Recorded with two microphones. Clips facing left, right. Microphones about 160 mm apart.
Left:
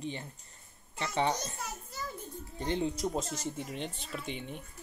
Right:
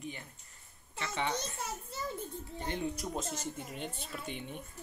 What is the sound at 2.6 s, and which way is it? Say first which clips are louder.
Speech: left 5 dB; 25° left (ahead or behind).